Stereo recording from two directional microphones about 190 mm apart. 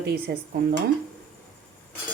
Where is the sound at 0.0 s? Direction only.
55° right (ahead or behind).